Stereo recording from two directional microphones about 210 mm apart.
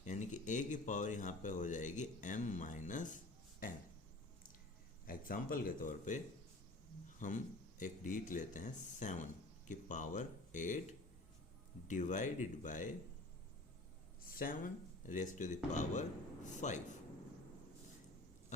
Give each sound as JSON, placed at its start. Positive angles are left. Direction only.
{"t": 0.0, "sound": "speech", "side_deg": 35}
{"t": 5.0, "sound": "speech", "side_deg": 40}
{"t": 11.9, "sound": "speech", "side_deg": 35}
{"t": 14.3, "sound": "speech", "side_deg": 40}